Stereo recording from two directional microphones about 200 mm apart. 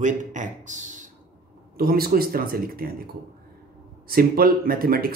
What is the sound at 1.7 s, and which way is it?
Speech, 50° right (ahead or behind).